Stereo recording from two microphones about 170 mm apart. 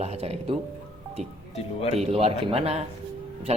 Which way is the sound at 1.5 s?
35° left (ahead or behind).